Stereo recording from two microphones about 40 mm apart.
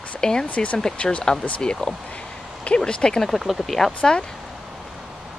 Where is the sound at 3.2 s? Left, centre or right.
Centre.